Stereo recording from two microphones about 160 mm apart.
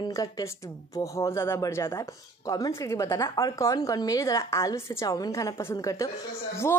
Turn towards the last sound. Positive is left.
turn(degrees=20)  # may be behind; listen again after turning